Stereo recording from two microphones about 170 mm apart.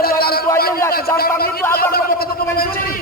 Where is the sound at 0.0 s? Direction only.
65° left (ahead or behind).